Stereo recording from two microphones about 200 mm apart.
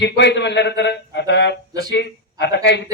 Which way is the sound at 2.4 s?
60° left (ahead or behind).